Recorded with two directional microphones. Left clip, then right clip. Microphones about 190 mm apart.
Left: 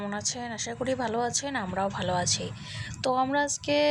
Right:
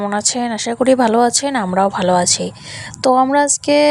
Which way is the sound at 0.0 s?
60° right (ahead or behind).